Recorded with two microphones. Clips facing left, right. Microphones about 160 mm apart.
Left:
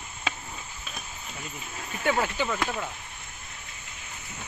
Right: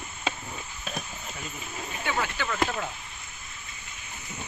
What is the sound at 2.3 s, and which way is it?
Speech, 15° left (ahead or behind).